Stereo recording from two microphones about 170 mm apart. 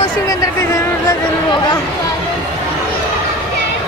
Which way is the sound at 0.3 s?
20° left (ahead or behind).